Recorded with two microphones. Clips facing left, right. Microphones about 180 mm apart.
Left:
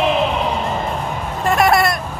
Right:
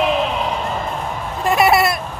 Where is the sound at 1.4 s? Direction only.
Centre (ahead or behind).